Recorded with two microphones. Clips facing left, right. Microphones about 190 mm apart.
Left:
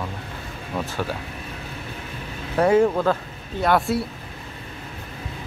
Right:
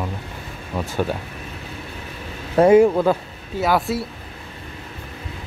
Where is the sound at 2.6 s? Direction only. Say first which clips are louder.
Right 5 dB; 15° right (ahead or behind).